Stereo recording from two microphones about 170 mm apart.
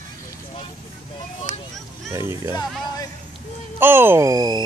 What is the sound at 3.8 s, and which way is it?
Speech, 15° right (ahead or behind).